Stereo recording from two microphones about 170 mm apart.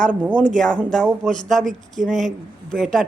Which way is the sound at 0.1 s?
10° right (ahead or behind).